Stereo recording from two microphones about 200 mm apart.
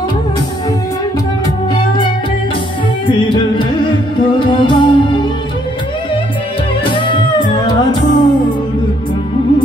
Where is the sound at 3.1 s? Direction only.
25° left (ahead or behind).